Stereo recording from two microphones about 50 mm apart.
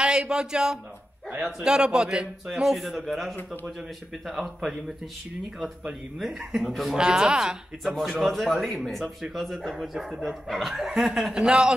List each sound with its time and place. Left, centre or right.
0.0 s a man's voice: centre
6.1 s speech: centre
7.0 s a man's voice: centre
7.8 s speech: centre
9.0 s a man's voice: centre
11.3 s a man's voice: centre